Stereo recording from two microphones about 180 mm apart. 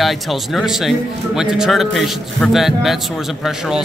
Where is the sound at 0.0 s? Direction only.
Centre (ahead or behind).